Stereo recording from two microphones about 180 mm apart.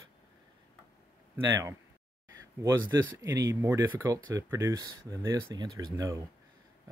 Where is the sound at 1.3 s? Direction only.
15° right (ahead or behind).